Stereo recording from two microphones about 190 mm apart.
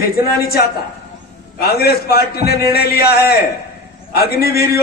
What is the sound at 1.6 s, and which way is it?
A man's voice, 55° left (ahead or behind).